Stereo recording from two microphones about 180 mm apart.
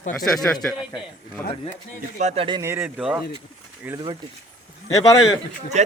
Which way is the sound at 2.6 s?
15° right (ahead or behind).